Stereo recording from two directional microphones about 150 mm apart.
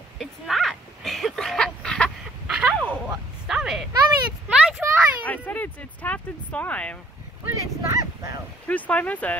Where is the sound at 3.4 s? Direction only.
5° right (ahead or behind).